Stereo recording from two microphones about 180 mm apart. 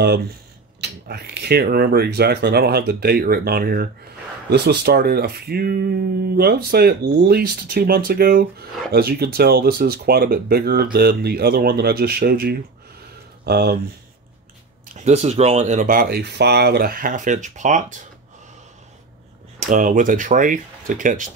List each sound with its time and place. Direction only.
0.0 s speech: 65° right (ahead or behind)
15.0 s speech: 40° right (ahead or behind)
19.6 s speech: 45° right (ahead or behind)